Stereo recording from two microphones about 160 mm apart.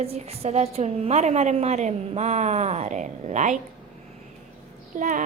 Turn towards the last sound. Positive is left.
turn(degrees=-55)  # may be behind; listen again after turning